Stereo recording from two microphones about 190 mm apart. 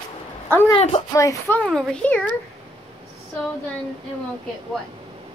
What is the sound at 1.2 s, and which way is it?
Speech, 15° left (ahead or behind).